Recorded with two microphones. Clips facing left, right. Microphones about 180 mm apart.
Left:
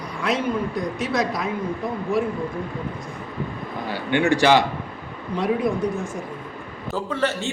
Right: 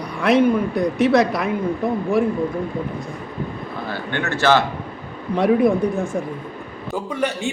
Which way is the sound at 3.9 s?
15° left (ahead or behind).